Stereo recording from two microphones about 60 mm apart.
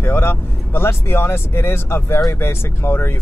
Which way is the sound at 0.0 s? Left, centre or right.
Left.